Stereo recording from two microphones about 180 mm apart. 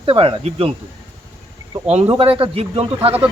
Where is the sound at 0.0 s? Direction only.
30° right (ahead or behind).